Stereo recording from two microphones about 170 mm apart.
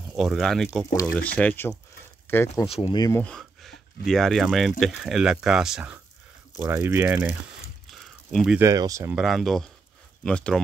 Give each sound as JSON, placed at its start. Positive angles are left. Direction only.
{"t": 0.1, "sound": "speech", "side_deg": 0}
{"t": 2.6, "sound": "speech", "side_deg": 35}
{"t": 3.0, "sound": "speech", "side_deg": 15}
{"t": 3.3, "sound": "speech", "side_deg": 0}
{"t": 6.6, "sound": "speech", "side_deg": -15}
{"t": 7.9, "sound": "a sound", "side_deg": 0}
{"t": 8.5, "sound": "speech", "side_deg": -20}
{"t": 9.1, "sound": "speech", "side_deg": 0}